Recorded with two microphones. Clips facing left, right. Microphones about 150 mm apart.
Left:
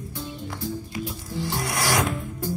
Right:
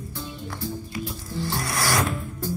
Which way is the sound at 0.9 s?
20° left (ahead or behind).